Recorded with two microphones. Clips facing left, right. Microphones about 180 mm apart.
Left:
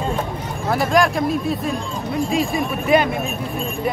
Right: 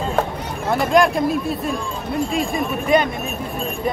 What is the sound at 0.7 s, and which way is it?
Speech, centre (ahead or behind).